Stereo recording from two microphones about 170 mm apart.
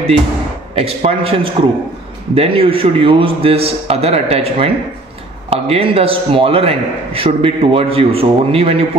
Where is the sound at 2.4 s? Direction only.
35° right (ahead or behind).